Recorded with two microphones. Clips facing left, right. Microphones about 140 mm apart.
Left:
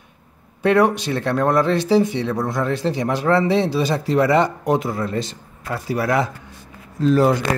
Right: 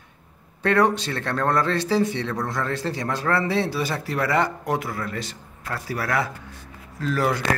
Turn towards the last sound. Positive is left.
turn(degrees=25)  # may be behind; listen again after turning